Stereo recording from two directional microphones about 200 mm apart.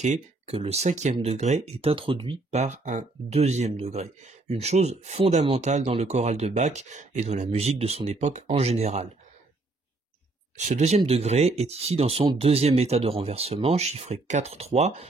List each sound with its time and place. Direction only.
0.0 s speech: 30° right (ahead or behind)
10.7 s speech: 30° right (ahead or behind)